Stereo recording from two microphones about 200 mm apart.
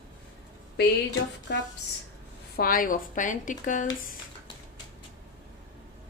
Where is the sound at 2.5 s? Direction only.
45° left (ahead or behind).